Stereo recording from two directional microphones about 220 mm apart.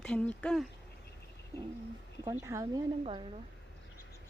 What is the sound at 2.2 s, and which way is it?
Speech, 10° right (ahead or behind).